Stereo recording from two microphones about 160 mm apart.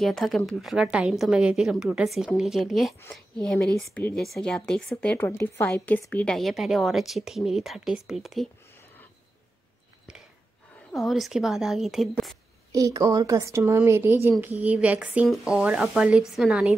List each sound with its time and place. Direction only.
0.0 s a woman's voice: centre (ahead or behind)
10.9 s speech: centre (ahead or behind)
12.7 s a woman's voice: 20° right (ahead or behind); by 16.7 s 5° right (ahead or behind)